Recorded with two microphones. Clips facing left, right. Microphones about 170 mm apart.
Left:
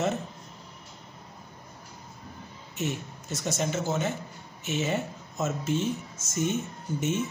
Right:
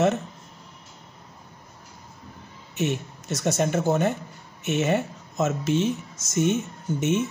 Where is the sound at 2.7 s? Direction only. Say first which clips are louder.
Right 6 dB; 70° right (ahead or behind).